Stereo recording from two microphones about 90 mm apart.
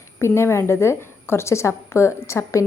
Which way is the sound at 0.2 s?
30° left (ahead or behind).